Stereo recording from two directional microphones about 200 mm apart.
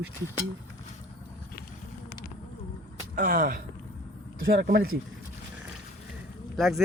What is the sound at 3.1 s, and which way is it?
Speech, 45° right (ahead or behind).